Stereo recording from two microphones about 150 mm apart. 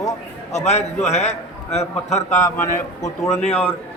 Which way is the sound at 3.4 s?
45° left (ahead or behind).